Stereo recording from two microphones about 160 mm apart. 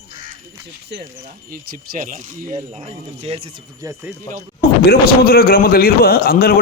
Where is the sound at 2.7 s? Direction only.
40° right (ahead or behind).